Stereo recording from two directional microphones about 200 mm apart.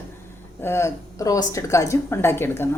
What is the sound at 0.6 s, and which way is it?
A woman's voice, 15° left (ahead or behind).